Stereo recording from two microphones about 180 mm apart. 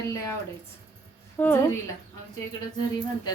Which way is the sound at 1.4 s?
10° left (ahead or behind).